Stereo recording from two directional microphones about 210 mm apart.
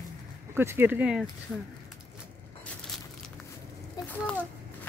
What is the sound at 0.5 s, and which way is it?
Speech, 10° right (ahead or behind).